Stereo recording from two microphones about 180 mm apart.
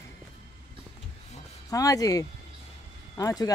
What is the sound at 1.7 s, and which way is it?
A woman's voice, 20° left (ahead or behind).